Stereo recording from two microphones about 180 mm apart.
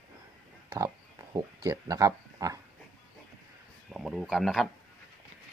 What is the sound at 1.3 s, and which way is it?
Speech, 20° right (ahead or behind).